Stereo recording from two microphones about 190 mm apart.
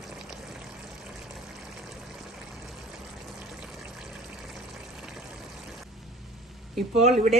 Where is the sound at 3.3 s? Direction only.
Centre (ahead or behind).